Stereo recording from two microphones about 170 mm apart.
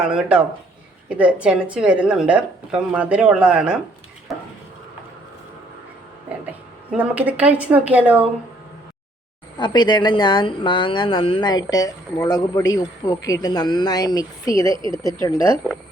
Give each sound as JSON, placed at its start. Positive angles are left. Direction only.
{"t": 0.0, "sound": "speech", "side_deg": -5}
{"t": 6.2, "sound": "a woman's voice", "side_deg": -10}
{"t": 9.6, "sound": "speech", "side_deg": 25}